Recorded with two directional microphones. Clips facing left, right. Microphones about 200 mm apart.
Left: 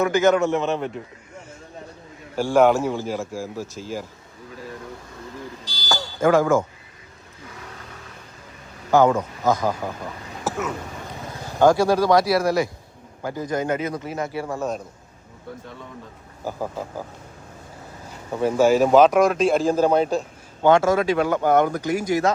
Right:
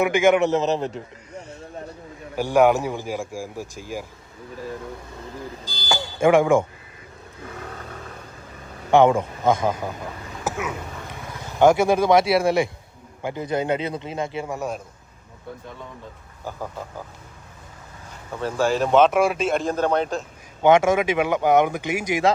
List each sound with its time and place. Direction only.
0.0 s speech: 20° right (ahead or behind)
2.3 s speech: 15° right (ahead or behind)
5.9 s a sound: 15° right (ahead or behind)
8.9 s speech: 25° right (ahead or behind)
11.6 s speech: 20° right (ahead or behind)
14.4 s speech: 10° right (ahead or behind)
16.4 s speech: 10° left (ahead or behind)
18.3 s a man's voice: 15° left (ahead or behind)
18.8 s speech: centre (ahead or behind)
20.6 s speech: 20° right (ahead or behind)